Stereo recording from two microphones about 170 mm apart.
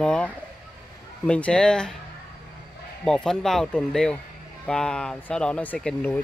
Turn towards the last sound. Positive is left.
turn(degrees=5)  # may be behind; listen again after turning